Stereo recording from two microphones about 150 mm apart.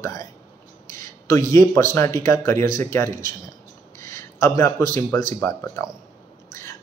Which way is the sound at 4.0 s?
20° left (ahead or behind).